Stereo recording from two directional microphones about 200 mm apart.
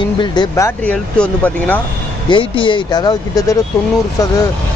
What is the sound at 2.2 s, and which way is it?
Speech, 25° left (ahead or behind).